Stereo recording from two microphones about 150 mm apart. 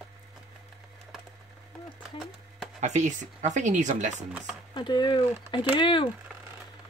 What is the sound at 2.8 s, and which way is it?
Speech, 55° right (ahead or behind).